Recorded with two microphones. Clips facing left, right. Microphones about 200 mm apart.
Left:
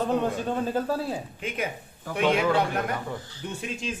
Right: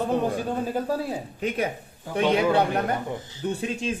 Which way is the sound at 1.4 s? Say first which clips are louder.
Right 5 dB; 40° right (ahead or behind).